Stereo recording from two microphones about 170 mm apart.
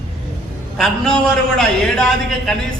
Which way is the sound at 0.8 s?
Centre (ahead or behind).